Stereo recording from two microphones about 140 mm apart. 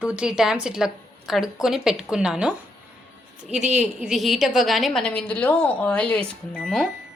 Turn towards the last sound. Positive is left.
turn(degrees=0)  # may be behind; listen again after turning